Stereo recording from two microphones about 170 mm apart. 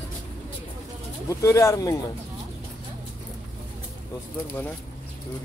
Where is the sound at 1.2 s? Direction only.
20° left (ahead or behind).